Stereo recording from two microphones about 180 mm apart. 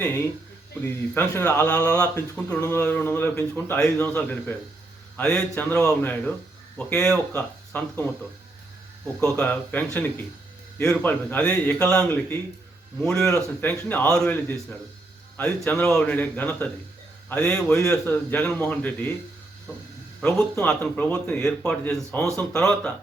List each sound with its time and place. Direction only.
0.7 s a man's voice: 10° left (ahead or behind)
9.3 s a man's voice: 10° left (ahead or behind)
20.2 s a man's voice: 5° left (ahead or behind)